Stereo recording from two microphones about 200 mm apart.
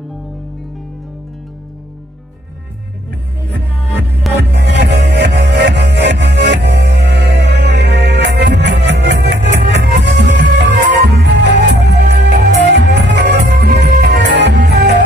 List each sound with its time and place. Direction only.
4.2 s music: centre (ahead or behind)
4.6 s music: 60° right (ahead or behind)